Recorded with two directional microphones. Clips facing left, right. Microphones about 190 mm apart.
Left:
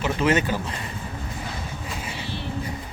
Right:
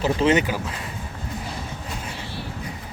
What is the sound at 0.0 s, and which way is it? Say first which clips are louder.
Speech: right 3 dB; 30° right (ahead or behind).